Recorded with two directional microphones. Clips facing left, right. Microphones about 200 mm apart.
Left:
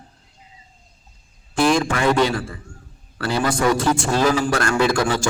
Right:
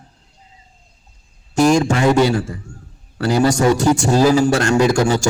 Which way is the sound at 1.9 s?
25° right (ahead or behind).